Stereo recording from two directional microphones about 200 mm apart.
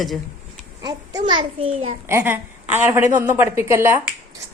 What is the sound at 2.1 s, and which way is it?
A woman's voice, 10° right (ahead or behind).